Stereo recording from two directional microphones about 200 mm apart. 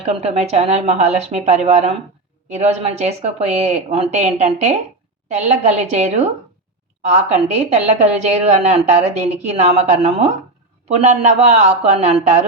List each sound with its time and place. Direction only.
0.0 s a woman's voice: 30° right (ahead or behind)